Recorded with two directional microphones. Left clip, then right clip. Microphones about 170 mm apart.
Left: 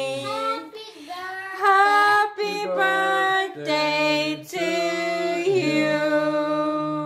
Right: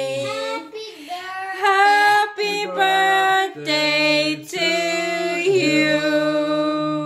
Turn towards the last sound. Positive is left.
turn(degrees=-20)  # may be behind; listen again after turning